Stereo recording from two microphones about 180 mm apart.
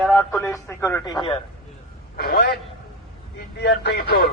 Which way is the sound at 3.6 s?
70° left (ahead or behind).